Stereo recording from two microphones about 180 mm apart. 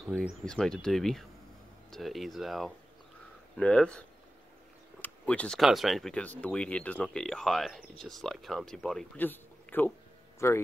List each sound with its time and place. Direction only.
0.1 s speech: 5° right (ahead or behind)
0.5 s speech: 5° left (ahead or behind)
5.0 s a man's voice: 5° left (ahead or behind)